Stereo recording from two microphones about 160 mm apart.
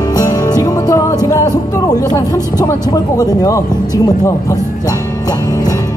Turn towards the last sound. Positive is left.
turn(degrees=25)  # may be behind; listen again after turning